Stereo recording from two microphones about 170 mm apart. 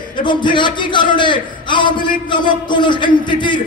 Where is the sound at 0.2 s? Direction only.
25° left (ahead or behind).